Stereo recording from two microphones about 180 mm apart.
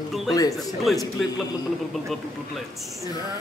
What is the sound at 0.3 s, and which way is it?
Speech, 20° left (ahead or behind).